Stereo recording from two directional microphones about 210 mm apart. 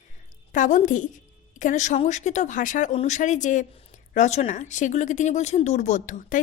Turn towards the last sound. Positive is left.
turn(degrees=40)  # may be behind; listen again after turning